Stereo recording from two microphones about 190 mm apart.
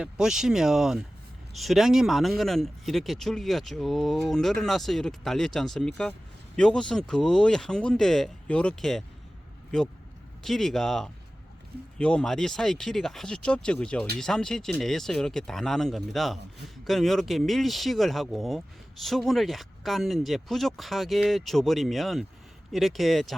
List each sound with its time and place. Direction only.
0.0 s speech: 5° right (ahead or behind)
10.4 s speech: centre (ahead or behind)